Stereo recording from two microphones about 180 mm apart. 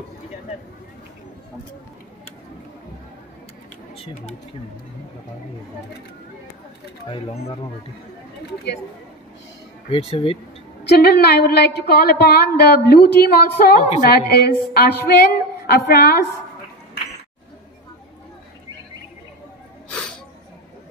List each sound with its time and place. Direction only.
3.9 s speech: 35° left (ahead or behind)
9.8 s speech: 30° left (ahead or behind)
10.8 s a woman's voice: 65° left (ahead or behind)
19.9 s a sound: 5° left (ahead or behind)